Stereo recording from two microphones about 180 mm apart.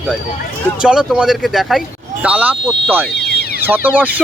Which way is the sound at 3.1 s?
65° left (ahead or behind).